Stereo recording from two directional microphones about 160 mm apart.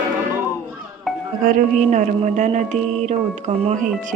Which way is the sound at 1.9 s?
50° right (ahead or behind).